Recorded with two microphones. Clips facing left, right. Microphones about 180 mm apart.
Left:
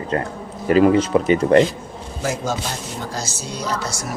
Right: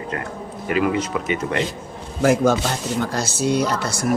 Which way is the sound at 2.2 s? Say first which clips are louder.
Right 8 dB; 55° right (ahead or behind).